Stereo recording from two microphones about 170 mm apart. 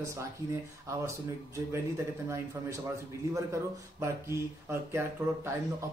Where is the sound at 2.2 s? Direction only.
15° right (ahead or behind).